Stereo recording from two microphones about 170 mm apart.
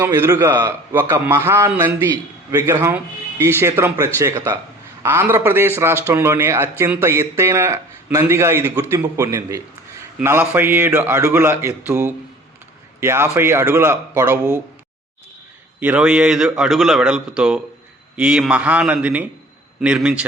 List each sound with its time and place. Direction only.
0.0 s speech: 15° right (ahead or behind)
15.8 s a man's voice: 10° right (ahead or behind)